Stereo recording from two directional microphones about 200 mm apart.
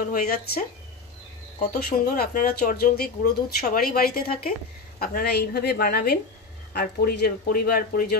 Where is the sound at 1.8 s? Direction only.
50° left (ahead or behind).